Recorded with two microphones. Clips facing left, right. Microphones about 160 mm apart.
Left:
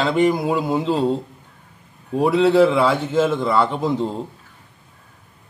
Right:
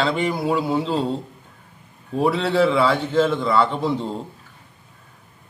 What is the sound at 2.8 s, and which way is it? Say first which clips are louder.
A man's voice: left 1 dB; 20° left (ahead or behind).